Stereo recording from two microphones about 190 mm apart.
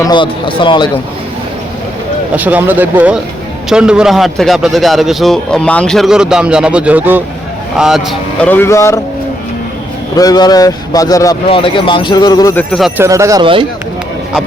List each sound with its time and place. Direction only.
0.0 s a man's voice: 25° left (ahead or behind)
2.3 s a man's voice: 10° right (ahead or behind)
8.4 s speech: 10° left (ahead or behind)
10.2 s a man's voice: 20° left (ahead or behind)
11.4 s a man's voice: 30° left (ahead or behind)
12.5 s a man's voice: centre (ahead or behind)
13.0 s speech: 15° right (ahead or behind)